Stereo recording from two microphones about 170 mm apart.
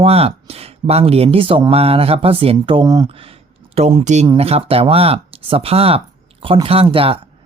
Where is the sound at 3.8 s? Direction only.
40° right (ahead or behind).